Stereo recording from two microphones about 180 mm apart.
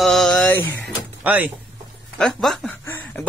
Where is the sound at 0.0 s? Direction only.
Centre (ahead or behind).